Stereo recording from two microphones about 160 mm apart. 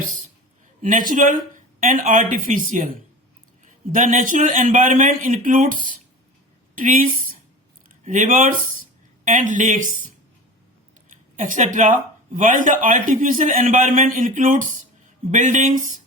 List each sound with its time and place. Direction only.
0.8 s a man's voice: 55° right (ahead or behind)
11.3 s a man's voice: 50° right (ahead or behind)